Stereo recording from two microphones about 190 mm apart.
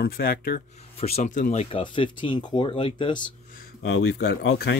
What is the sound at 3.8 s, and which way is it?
Speech, 75° left (ahead or behind).